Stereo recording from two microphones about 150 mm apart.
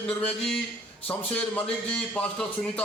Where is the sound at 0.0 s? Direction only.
5° left (ahead or behind).